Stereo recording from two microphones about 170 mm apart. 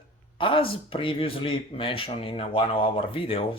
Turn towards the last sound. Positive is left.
turn(degrees=30)  # may be behind; listen again after turning